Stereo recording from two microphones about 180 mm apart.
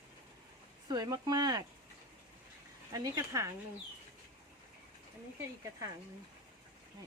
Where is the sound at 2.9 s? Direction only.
20° right (ahead or behind).